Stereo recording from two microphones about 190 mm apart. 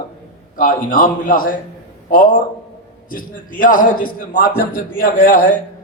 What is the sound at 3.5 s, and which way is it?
A man's voice, 45° left (ahead or behind).